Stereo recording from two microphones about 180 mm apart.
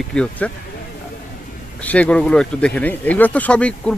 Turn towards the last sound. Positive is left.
turn(degrees=5)  # may be behind; listen again after turning